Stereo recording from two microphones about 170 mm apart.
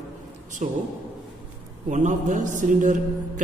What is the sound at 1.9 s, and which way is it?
A woman's voice, 45° right (ahead or behind).